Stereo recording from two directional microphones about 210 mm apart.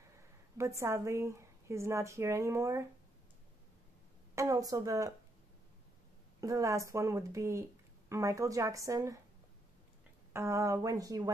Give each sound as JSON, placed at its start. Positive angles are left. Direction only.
{"t": 0.6, "sound": "a woman's voice", "side_deg": -15}
{"t": 4.4, "sound": "a woman's voice", "side_deg": -15}
{"t": 6.4, "sound": "a woman's voice", "side_deg": -15}
{"t": 10.3, "sound": "a woman's voice", "side_deg": -15}